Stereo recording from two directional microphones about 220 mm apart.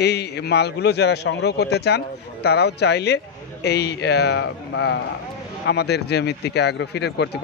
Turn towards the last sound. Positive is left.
turn(degrees=50)  # may be behind; listen again after turning